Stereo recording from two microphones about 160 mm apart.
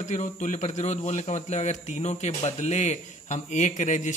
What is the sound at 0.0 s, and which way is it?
A man's voice, 50° left (ahead or behind).